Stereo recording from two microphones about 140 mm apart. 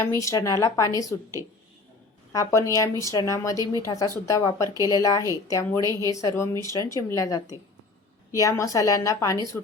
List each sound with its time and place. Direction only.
0.0 s a woman's voice: 20° left (ahead or behind)
2.3 s a woman's voice: 25° left (ahead or behind)
4.6 s speech: 25° right (ahead or behind)
4.9 s a woman's voice: 25° left (ahead or behind)
5.8 s speech: 25° right (ahead or behind)
6.1 s a woman's voice: 25° left (ahead or behind)